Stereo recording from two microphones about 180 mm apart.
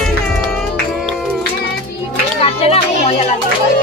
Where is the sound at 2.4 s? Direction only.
35° left (ahead or behind).